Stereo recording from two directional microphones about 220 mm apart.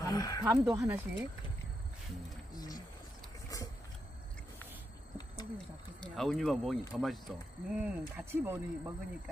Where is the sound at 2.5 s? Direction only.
15° left (ahead or behind).